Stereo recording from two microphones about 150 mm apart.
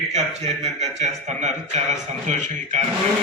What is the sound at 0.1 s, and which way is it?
Speech, 45° right (ahead or behind).